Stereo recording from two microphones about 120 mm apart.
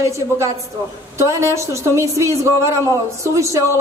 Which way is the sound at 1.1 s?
25° right (ahead or behind).